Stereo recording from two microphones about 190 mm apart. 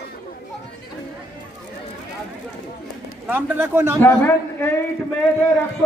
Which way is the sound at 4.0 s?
10° left (ahead or behind).